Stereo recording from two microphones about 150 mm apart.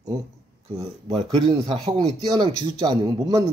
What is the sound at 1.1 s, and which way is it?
Speech, 30° right (ahead or behind).